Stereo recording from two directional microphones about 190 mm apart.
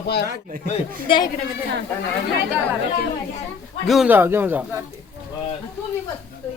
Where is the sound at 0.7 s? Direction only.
25° left (ahead or behind).